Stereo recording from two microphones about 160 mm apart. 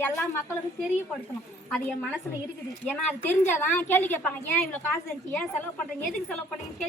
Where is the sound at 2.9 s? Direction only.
10° left (ahead or behind).